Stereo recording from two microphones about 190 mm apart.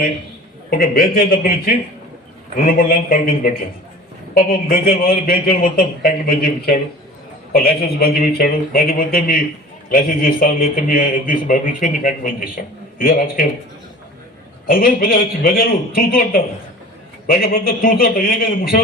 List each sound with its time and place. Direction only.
0.7 s a man's voice: 50° left (ahead or behind)
14.7 s a man's voice: 50° left (ahead or behind)